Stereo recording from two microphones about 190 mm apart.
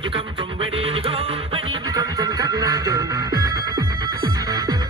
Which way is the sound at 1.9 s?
15° right (ahead or behind).